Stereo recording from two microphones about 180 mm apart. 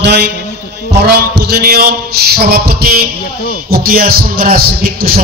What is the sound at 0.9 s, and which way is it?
Music, 65° right (ahead or behind).